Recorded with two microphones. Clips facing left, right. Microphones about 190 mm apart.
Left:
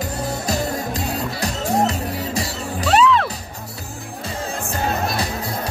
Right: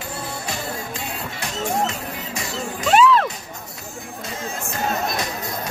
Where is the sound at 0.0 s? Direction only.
40° left (ahead or behind).